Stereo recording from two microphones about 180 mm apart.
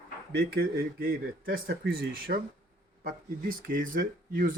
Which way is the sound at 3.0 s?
50° right (ahead or behind).